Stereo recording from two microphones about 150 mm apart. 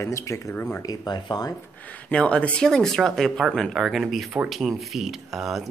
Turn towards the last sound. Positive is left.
turn(degrees=0)  # may be behind; listen again after turning